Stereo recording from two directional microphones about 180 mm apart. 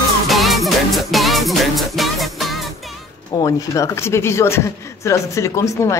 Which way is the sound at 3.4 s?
20° left (ahead or behind).